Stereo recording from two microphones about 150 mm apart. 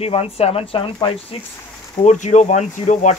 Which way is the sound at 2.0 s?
50° left (ahead or behind).